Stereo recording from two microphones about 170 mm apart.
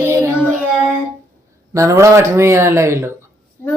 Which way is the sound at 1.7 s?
15° right (ahead or behind).